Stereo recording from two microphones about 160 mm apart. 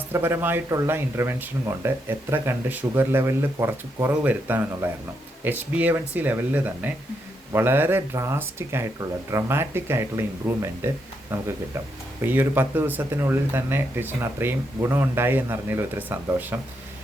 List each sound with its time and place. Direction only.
0.1 s speech: 15° right (ahead or behind)